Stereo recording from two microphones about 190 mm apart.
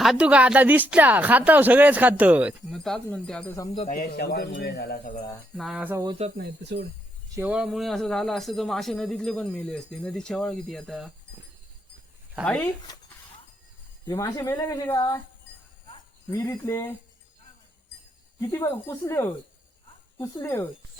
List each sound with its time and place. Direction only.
0.0 s speech: 5° right (ahead or behind)
3.8 s speech: 40° left (ahead or behind)
4.1 s speech: 60° left (ahead or behind)
5.5 s speech: centre (ahead or behind)
6.3 s speech: 60° right (ahead or behind)
7.3 s speech: 5° right (ahead or behind)
12.4 s speech: 5° left (ahead or behind)
14.1 s speech: 15° left (ahead or behind)
16.3 s speech: 15° left (ahead or behind)
18.3 s speech: 15° left (ahead or behind)